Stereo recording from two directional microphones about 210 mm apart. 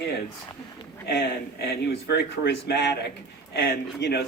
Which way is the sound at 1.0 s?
50° left (ahead or behind).